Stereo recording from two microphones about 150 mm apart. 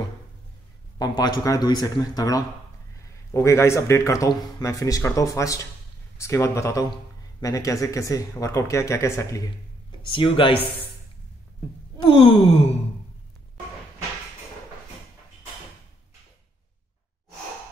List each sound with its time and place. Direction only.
0.9 s speech: 25° left (ahead or behind)
12.0 s wail: 35° left (ahead or behind)